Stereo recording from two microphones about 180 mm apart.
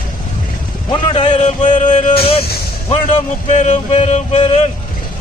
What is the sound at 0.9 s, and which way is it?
Music, 30° left (ahead or behind).